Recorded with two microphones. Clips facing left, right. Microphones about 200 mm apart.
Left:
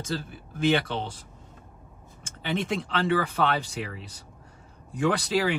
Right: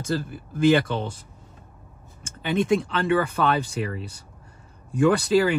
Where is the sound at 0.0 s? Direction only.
55° right (ahead or behind).